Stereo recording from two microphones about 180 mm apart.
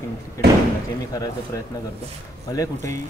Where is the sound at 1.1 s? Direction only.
20° left (ahead or behind).